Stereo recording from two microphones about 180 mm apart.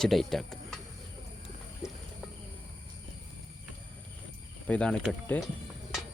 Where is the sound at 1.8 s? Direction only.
15° left (ahead or behind).